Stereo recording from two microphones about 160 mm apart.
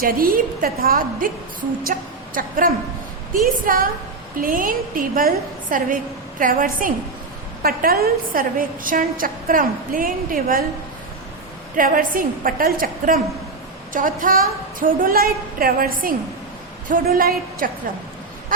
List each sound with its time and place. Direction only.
0.0 s a woman's voice: 65° right (ahead or behind)
11.8 s a woman's voice: 60° right (ahead or behind)